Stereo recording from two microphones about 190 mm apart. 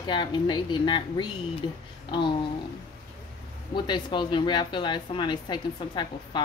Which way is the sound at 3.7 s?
25° left (ahead or behind).